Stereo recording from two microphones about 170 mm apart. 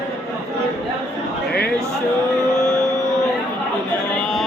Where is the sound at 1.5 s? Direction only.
70° left (ahead or behind).